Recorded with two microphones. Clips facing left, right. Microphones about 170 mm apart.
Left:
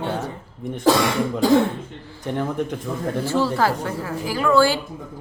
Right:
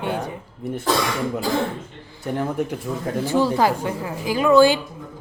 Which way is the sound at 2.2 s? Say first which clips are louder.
Even; 5° right (ahead or behind).